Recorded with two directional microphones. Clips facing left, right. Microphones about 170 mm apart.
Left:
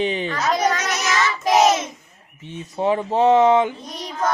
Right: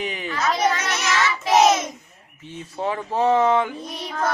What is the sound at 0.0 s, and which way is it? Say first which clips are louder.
Speech: left 7 dB; 30° left (ahead or behind).